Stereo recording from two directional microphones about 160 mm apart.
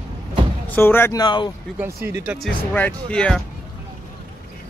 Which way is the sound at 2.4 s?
10° left (ahead or behind).